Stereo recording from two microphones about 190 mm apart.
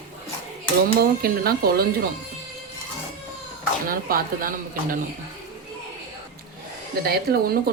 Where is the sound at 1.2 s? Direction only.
50° right (ahead or behind).